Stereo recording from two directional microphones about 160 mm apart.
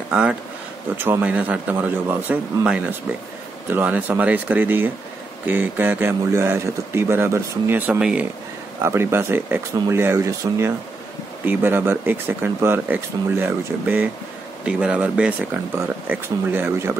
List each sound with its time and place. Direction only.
0.1 s speech: 5° right (ahead or behind)